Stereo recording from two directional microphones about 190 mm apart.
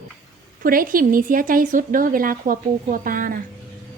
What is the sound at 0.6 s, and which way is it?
A woman's voice, 50° right (ahead or behind).